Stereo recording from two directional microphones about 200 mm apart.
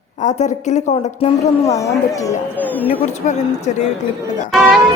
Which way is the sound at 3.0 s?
35° left (ahead or behind).